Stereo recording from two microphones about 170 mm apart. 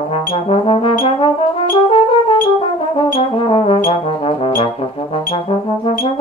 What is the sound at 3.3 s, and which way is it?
Brass instrument, 30° left (ahead or behind).